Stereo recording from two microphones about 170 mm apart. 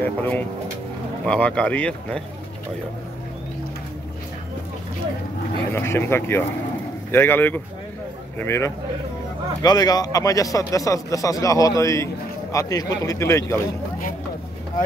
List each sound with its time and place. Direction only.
0.0 s speech: 10° left (ahead or behind)
5.7 s speech: 15° left (ahead or behind)